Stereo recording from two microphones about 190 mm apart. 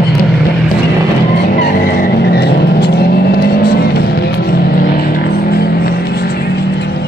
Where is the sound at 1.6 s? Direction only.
55° left (ahead or behind).